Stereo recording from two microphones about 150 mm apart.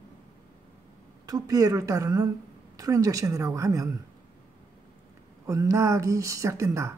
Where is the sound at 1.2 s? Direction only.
25° right (ahead or behind).